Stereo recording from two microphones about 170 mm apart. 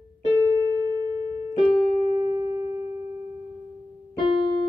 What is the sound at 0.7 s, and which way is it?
Music, 25° right (ahead or behind).